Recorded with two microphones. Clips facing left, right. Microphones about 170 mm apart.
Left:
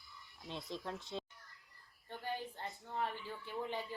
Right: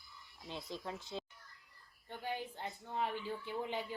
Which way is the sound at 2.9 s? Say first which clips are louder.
Right 3 dB; 15° right (ahead or behind).